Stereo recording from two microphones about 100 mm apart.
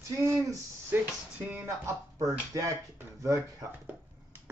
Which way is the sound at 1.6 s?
30° right (ahead or behind).